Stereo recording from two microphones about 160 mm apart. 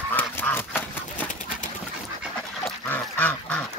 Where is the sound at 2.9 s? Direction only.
10° left (ahead or behind).